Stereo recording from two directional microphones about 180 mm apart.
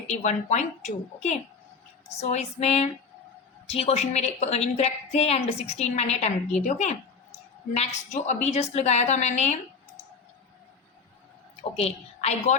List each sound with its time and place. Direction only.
0.1 s a woman's voice: 40° left (ahead or behind)
11.8 s a woman's voice: 35° left (ahead or behind)